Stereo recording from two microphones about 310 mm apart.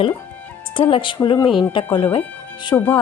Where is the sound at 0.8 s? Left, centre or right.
Centre.